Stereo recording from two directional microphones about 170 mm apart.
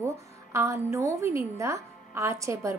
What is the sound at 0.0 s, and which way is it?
A woman's voice, 15° right (ahead or behind).